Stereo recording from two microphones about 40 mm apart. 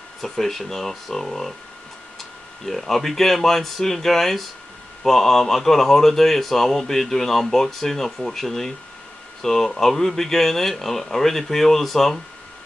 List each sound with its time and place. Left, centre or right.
0.2 s speech: centre